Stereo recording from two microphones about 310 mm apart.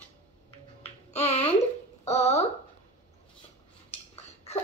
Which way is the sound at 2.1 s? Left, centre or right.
Left.